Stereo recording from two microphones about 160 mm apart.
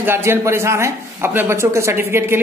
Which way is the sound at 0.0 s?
15° right (ahead or behind).